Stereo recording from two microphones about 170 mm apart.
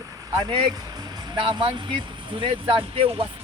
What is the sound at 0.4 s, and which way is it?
Speech, 25° right (ahead or behind).